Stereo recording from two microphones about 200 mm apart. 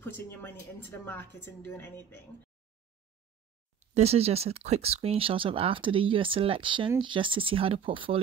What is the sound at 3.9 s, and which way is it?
Speech, 30° right (ahead or behind).